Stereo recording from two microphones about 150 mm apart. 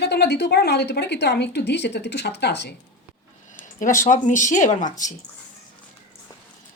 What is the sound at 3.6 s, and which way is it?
Speech, 55° left (ahead or behind).